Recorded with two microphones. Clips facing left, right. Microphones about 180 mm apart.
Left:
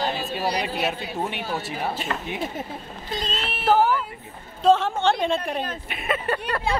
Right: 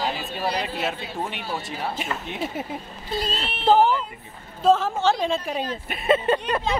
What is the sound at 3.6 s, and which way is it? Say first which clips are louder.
Speech: right 2 dB; 20° right (ahead or behind).